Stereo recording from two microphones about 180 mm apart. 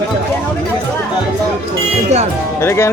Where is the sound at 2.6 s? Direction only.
15° left (ahead or behind).